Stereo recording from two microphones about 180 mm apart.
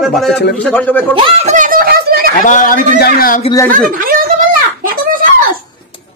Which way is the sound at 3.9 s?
50° right (ahead or behind).